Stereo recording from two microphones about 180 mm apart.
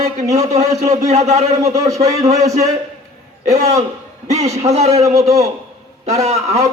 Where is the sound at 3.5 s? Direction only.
40° right (ahead or behind).